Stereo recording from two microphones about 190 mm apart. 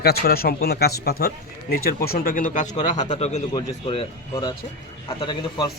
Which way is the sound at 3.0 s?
25° left (ahead or behind).